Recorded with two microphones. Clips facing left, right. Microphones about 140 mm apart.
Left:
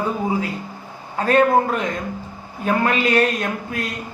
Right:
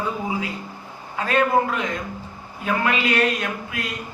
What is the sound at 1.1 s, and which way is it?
A man's voice, 40° left (ahead or behind).